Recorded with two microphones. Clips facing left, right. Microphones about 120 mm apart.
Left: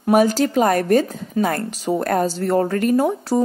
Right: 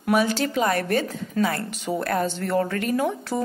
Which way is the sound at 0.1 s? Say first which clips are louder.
Left 6 dB; 40° left (ahead or behind).